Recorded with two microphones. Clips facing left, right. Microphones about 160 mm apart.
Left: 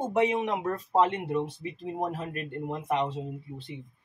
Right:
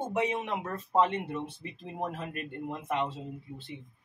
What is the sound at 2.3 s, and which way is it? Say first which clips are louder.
Speech: left 3 dB; 40° left (ahead or behind).